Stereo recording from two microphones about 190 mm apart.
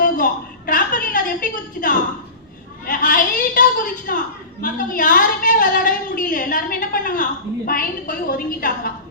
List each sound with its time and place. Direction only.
0.2 s a woman's voice: 50° left (ahead or behind)